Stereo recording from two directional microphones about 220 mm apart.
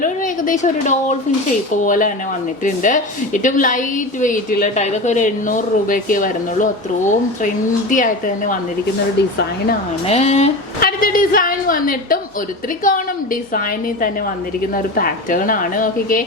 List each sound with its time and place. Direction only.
0.0 s a sound: 35° left (ahead or behind)
1.7 s a woman's voice: 35° left (ahead or behind)
10.1 s speech: 30° left (ahead or behind)
10.8 s a woman's voice: 40° left (ahead or behind)
14.9 s a woman's voice: 40° left (ahead or behind)